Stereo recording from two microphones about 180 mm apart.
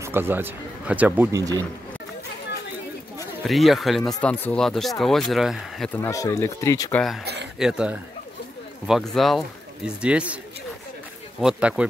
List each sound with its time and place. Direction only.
0.0 s speech: 10° right (ahead or behind)
3.4 s speech: centre (ahead or behind)
5.9 s speech: 15° left (ahead or behind)
7.5 s speech: 5° right (ahead or behind)
11.4 s speech: 5° right (ahead or behind)